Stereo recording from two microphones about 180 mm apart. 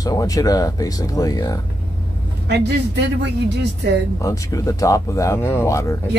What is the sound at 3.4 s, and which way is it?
Speech, 70° right (ahead or behind).